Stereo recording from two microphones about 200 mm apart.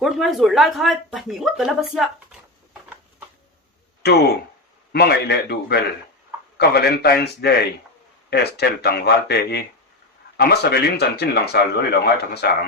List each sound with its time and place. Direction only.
0.0 s speech: centre (ahead or behind)
4.9 s a man's voice: 55° left (ahead or behind)